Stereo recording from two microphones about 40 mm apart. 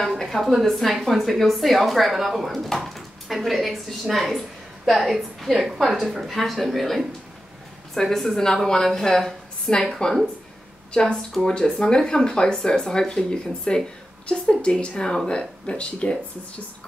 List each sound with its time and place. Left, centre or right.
0.0 s a sound: centre
0.4 s a woman's voice: centre
10.9 s a woman's voice: left